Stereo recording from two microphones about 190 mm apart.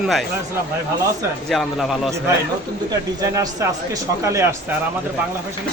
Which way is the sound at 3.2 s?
20° right (ahead or behind).